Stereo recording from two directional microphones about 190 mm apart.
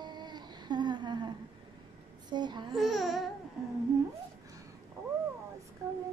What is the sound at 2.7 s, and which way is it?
Speech, centre (ahead or behind).